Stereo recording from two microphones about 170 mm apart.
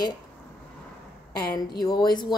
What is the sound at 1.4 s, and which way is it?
Speech, 25° left (ahead or behind).